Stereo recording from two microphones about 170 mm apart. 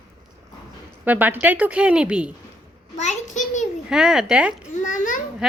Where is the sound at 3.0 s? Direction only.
45° left (ahead or behind).